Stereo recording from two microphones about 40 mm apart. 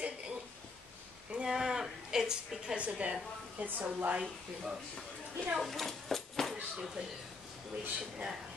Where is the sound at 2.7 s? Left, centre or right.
Right.